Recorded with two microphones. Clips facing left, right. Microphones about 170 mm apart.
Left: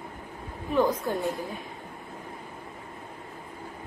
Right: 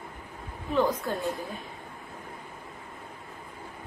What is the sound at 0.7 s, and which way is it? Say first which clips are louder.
Speech: left 2 dB; 20° left (ahead or behind).